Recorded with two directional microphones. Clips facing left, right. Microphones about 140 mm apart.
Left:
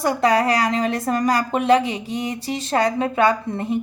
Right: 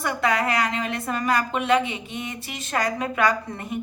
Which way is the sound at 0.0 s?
35° left (ahead or behind).